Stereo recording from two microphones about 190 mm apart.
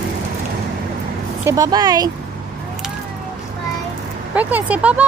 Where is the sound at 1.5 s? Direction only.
20° right (ahead or behind).